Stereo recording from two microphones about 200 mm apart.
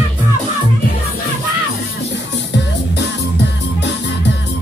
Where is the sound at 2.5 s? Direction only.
60° left (ahead or behind).